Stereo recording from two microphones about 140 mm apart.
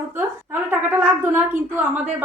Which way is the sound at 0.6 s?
15° right (ahead or behind).